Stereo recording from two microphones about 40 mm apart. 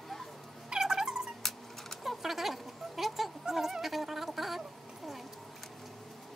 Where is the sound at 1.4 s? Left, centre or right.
Centre.